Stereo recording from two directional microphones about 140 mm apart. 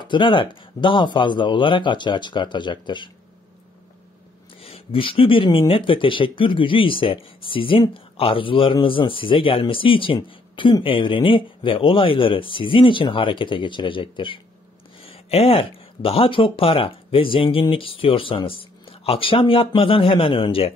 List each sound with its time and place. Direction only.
0.1 s speech: 35° left (ahead or behind)
4.6 s speech: 45° left (ahead or behind)